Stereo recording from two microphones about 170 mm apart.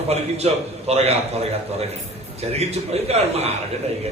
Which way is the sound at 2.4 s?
40° right (ahead or behind).